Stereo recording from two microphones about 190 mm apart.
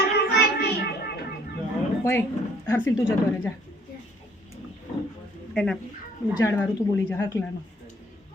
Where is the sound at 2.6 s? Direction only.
15° left (ahead or behind).